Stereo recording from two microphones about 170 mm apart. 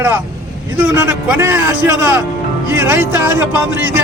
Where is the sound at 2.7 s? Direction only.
15° right (ahead or behind).